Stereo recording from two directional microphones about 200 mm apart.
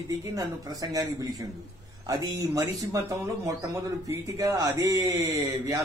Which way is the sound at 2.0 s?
20° right (ahead or behind).